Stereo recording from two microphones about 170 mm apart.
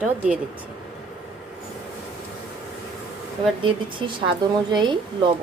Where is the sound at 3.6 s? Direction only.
30° right (ahead or behind).